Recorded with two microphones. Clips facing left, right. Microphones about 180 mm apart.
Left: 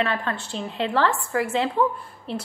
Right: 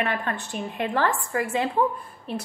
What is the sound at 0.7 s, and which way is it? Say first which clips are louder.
Speech: left 2 dB; 55° right (ahead or behind).